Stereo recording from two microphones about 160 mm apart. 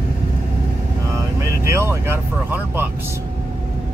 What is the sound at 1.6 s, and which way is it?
Speech, 15° right (ahead or behind).